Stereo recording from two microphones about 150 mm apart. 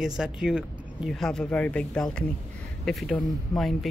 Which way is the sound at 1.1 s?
5° left (ahead or behind).